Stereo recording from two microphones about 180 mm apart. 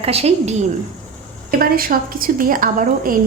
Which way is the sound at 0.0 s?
35° right (ahead or behind).